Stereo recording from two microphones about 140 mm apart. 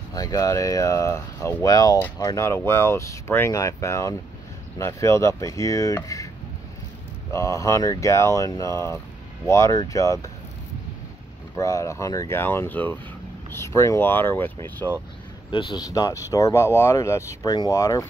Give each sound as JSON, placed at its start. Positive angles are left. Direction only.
{"t": 0.1, "sound": "speech", "side_deg": 25}
{"t": 7.3, "sound": "speech", "side_deg": 20}
{"t": 11.5, "sound": "speech", "side_deg": 20}
{"t": 15.5, "sound": "speech", "side_deg": 30}